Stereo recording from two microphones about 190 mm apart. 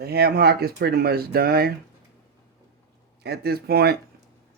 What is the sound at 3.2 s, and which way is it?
Speech, 55° right (ahead or behind).